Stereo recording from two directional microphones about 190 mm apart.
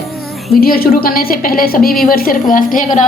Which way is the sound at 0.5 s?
50° left (ahead or behind).